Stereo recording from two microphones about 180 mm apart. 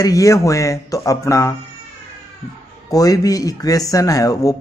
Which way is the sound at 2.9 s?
20° left (ahead or behind).